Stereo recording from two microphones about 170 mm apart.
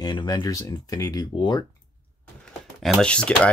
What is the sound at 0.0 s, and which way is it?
Speech, 25° left (ahead or behind).